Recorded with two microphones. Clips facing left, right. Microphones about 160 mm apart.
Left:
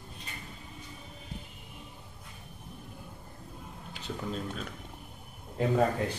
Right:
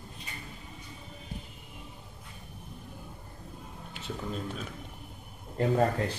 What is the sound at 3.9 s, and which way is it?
Speech, centre (ahead or behind).